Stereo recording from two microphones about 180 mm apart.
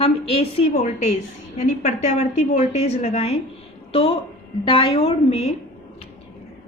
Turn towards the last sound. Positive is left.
turn(degrees=35)  # may be behind; listen again after turning